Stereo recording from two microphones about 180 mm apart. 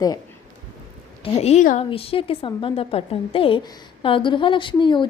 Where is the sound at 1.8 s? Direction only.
30° left (ahead or behind).